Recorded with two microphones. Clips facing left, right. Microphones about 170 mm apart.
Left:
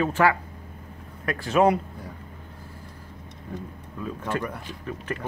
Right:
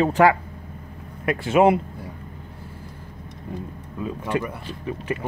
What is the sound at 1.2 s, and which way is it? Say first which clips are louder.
Speech: right 3 dB; 25° right (ahead or behind).